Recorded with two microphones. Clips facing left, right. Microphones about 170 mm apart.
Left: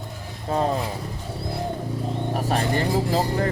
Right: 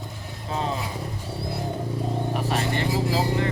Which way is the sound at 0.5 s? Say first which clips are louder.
Left 6 dB; 50° left (ahead or behind).